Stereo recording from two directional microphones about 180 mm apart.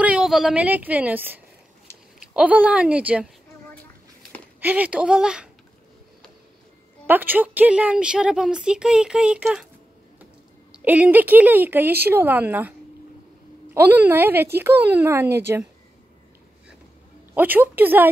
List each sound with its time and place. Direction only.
0.0 s a woman's voice: 5° right (ahead or behind)
3.7 s a sound: 10° left (ahead or behind)
4.6 s speech: 10° right (ahead or behind)
7.1 s a woman's voice: 10° right (ahead or behind)
10.7 s speech: 10° right (ahead or behind)
13.7 s speech: 10° right (ahead or behind)
17.3 s speech: 10° right (ahead or behind)